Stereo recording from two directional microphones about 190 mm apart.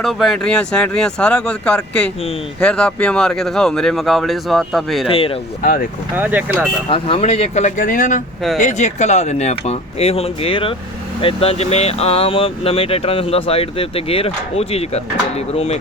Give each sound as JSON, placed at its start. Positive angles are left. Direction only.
{"t": 0.0, "sound": "speech", "side_deg": 0}
{"t": 5.0, "sound": "speech", "side_deg": 30}
{"t": 6.1, "sound": "speech", "side_deg": -10}
{"t": 6.8, "sound": "speech", "side_deg": 30}